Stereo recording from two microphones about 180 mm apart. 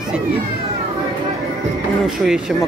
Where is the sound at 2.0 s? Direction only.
5° right (ahead or behind).